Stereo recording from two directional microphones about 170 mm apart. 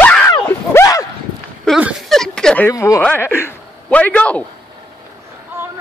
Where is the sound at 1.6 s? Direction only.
Centre (ahead or behind).